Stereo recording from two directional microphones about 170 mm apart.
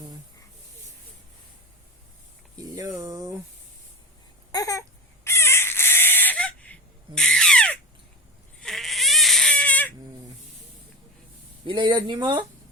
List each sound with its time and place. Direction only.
2.9 s a sound: 20° right (ahead or behind)
4.5 s baby cry: 20° left (ahead or behind)
11.6 s speech: 30° right (ahead or behind)